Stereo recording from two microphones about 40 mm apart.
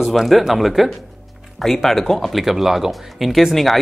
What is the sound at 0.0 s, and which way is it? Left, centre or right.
Speech, centre.